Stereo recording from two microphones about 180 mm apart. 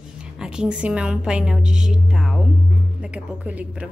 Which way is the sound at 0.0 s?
5° right (ahead or behind).